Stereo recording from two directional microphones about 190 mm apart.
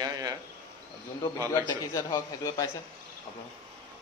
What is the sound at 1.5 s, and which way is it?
A man's voice, 20° left (ahead or behind).